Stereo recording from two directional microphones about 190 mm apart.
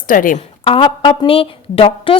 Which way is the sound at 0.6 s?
25° left (ahead or behind).